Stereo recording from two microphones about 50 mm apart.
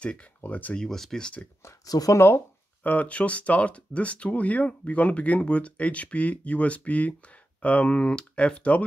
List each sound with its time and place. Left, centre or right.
0.0 s speech: left
0.7 s speech: centre
1.6 s speech: left
2.8 s speech: left